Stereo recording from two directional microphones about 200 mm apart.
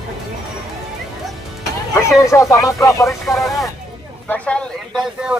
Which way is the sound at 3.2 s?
Centre (ahead or behind).